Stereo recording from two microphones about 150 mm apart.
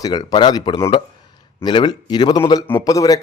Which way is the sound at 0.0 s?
30° left (ahead or behind).